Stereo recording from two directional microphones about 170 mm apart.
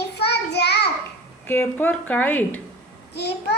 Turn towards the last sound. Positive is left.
turn(degrees=75)  # may be behind; listen again after turning